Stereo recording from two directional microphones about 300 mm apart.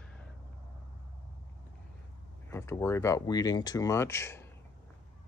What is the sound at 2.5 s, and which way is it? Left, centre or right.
Speech, centre.